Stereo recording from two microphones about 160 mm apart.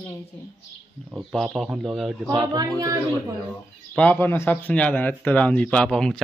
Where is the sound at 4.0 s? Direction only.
10° left (ahead or behind).